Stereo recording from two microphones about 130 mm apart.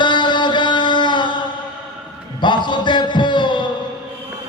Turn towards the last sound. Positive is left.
turn(degrees=35)  # may be behind; listen again after turning